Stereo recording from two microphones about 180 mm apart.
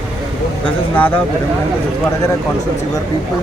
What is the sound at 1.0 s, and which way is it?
Speech, 10° left (ahead or behind).